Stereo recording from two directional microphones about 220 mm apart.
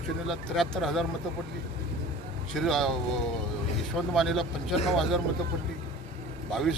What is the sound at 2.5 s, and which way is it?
Speech, centre (ahead or behind).